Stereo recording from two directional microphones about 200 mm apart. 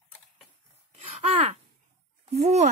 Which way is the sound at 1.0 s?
30° right (ahead or behind).